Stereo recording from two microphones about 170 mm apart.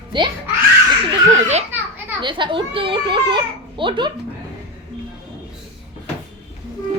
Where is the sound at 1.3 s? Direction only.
40° right (ahead or behind).